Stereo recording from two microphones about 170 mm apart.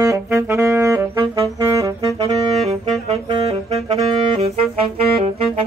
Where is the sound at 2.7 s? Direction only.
35° right (ahead or behind).